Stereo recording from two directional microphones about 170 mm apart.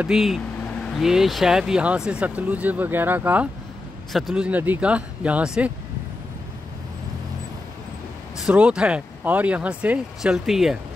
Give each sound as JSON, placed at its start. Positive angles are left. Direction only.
{"t": 0.0, "sound": "speech", "side_deg": 0}
{"t": 8.4, "sound": "speech", "side_deg": -5}